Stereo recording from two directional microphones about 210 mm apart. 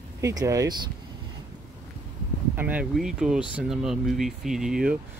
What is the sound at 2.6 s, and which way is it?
Speech, 5° right (ahead or behind).